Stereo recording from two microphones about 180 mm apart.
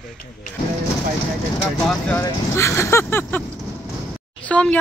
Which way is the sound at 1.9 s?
10° left (ahead or behind).